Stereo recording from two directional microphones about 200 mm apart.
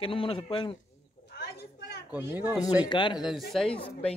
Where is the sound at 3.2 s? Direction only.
Centre (ahead or behind).